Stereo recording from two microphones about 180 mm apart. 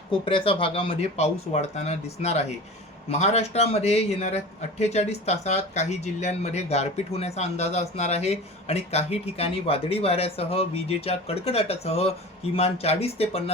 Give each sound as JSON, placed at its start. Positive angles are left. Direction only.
{"t": 0.1, "sound": "speech", "side_deg": 30}